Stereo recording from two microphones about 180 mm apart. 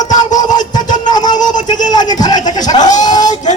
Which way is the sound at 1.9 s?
20° left (ahead or behind).